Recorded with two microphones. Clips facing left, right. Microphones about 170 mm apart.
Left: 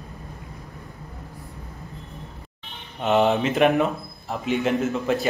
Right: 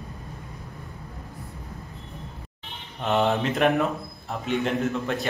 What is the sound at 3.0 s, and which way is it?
A man's voice, centre (ahead or behind).